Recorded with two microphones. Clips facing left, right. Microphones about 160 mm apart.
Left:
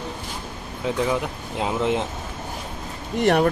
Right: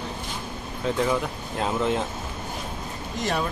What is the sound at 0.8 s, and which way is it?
Speech, 15° left (ahead or behind).